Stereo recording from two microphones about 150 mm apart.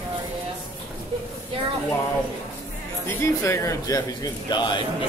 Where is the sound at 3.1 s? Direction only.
20° left (ahead or behind).